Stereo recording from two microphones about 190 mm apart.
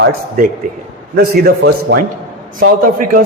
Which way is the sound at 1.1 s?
55° right (ahead or behind).